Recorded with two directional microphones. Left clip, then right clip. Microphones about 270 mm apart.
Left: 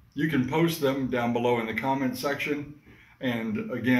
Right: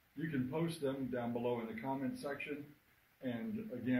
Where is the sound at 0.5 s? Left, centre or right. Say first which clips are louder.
Left 14 dB; centre.